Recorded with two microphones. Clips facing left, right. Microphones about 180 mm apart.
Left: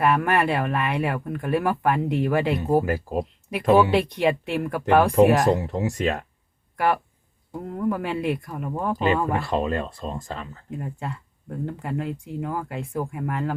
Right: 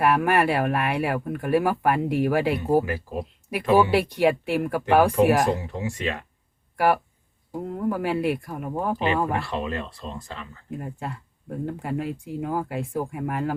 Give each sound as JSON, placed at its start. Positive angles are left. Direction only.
{"t": 0.0, "sound": "speech", "side_deg": -10}
{"t": 3.1, "sound": "speech", "side_deg": 45}
{"t": 3.5, "sound": "speech", "side_deg": -10}
{"t": 5.7, "sound": "speech", "side_deg": 40}
{"t": 6.7, "sound": "speech", "side_deg": -10}
{"t": 9.4, "sound": "speech", "side_deg": 40}
{"t": 10.8, "sound": "speech", "side_deg": 0}